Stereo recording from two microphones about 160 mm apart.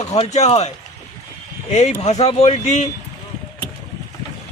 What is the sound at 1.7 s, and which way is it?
Speech, 45° left (ahead or behind).